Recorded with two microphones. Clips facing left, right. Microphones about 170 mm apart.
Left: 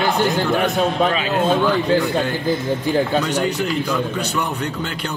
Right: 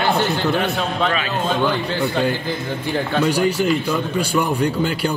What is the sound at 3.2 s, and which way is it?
A man's voice, 10° right (ahead or behind).